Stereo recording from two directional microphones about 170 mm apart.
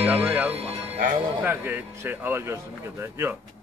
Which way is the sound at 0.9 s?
50° right (ahead or behind).